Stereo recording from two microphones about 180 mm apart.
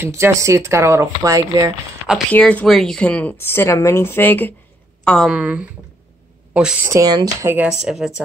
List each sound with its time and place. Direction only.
0.0 s speech: 15° right (ahead or behind)
2.3 s a woman's voice: 5° left (ahead or behind)
6.9 s speech: 20° right (ahead or behind)
7.8 s a woman's voice: centre (ahead or behind)